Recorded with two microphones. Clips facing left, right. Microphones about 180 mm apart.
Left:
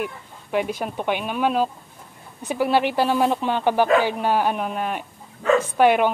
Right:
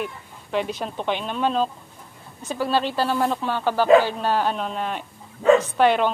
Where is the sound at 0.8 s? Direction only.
10° left (ahead or behind).